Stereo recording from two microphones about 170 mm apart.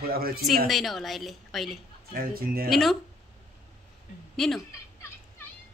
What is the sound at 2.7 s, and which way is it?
Speech, centre (ahead or behind).